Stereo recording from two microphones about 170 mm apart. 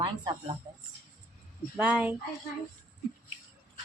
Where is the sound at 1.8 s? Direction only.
10° right (ahead or behind).